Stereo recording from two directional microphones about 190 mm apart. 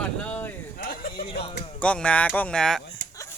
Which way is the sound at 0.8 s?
50° left (ahead or behind).